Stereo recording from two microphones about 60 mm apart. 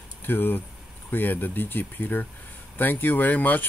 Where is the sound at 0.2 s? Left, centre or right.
Left.